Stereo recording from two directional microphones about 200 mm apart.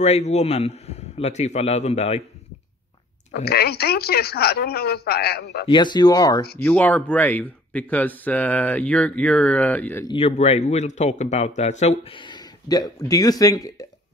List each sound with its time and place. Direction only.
0.0 s a man's voice: 35° left (ahead or behind)
3.3 s a woman's voice: 55° left (ahead or behind)
5.7 s speech: 20° left (ahead or behind)
6.6 s speech: 10° left (ahead or behind)
10.0 s speech: 30° left (ahead or behind)